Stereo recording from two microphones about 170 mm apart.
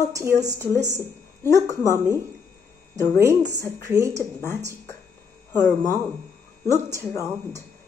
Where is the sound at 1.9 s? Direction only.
15° right (ahead or behind).